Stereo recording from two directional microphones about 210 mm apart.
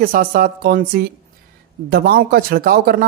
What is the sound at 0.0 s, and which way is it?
Speech, 40° right (ahead or behind).